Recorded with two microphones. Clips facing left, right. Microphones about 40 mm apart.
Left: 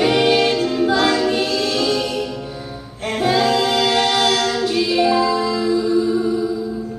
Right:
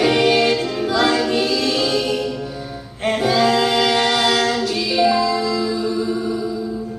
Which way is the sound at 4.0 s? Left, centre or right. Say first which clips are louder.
Left 1 dB; right.